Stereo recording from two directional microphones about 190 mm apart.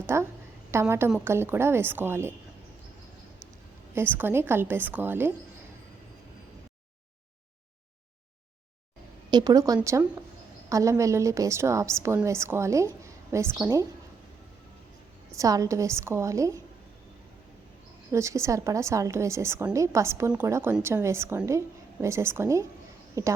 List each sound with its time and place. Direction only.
0.0 s a woman's voice: 15° right (ahead or behind)
3.9 s a woman's voice: 10° right (ahead or behind)
9.3 s a woman's voice: 20° right (ahead or behind)
15.4 s a woman's voice: 15° right (ahead or behind)
18.1 s a woman's voice: 15° right (ahead or behind)